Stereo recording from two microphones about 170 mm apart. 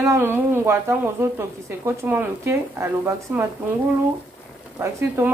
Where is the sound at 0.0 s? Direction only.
15° right (ahead or behind).